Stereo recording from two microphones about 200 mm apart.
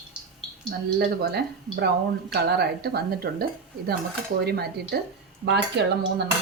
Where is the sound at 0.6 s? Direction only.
50° right (ahead or behind).